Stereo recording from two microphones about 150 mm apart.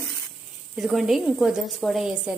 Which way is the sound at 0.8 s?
Centre (ahead or behind).